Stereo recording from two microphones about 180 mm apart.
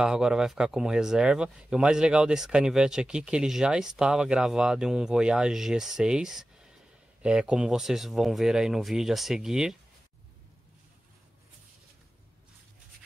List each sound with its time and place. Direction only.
0.0 s speech: 5° right (ahead or behind)